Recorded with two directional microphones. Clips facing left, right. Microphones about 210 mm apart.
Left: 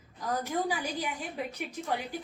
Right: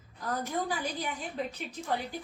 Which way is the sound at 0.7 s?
10° left (ahead or behind).